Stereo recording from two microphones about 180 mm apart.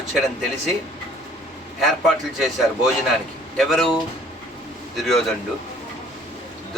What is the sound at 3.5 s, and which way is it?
Speech, centre (ahead or behind).